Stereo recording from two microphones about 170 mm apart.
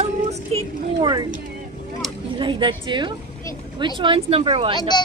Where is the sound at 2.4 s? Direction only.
30° right (ahead or behind).